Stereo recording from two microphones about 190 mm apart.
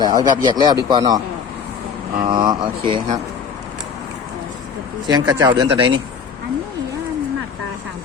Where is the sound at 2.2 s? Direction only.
25° right (ahead or behind).